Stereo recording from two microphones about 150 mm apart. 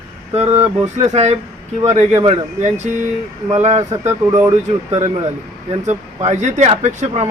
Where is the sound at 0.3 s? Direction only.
45° right (ahead or behind).